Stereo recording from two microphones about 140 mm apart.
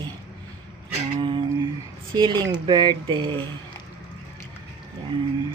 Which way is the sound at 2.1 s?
35° right (ahead or behind).